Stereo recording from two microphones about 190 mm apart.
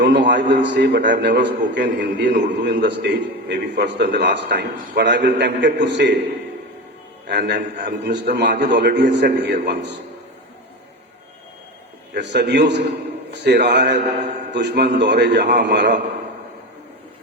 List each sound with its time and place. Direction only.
0.0 s a man's voice: 65° right (ahead or behind)
7.3 s a man's voice: 65° right (ahead or behind)
12.2 s a man's voice: 65° right (ahead or behind)